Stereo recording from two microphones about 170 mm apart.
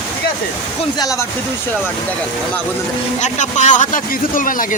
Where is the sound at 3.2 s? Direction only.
45° left (ahead or behind).